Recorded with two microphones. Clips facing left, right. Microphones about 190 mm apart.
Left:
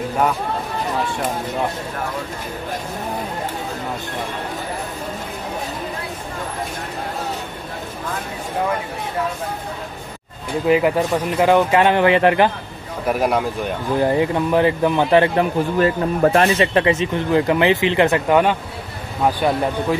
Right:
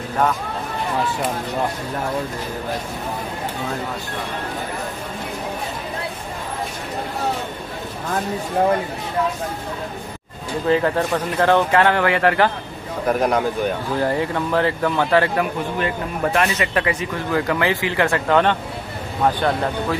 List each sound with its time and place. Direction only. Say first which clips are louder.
10.7 s speech: left 2 dB; 10° left (ahead or behind)
13.0 s a man's voice: even; 5° left (ahead or behind)
13.9 s speech: left 6 dB; 20° left (ahead or behind)
15.8 s speech: left 8 dB; 35° left (ahead or behind); by 20.0 s 10° left (ahead or behind)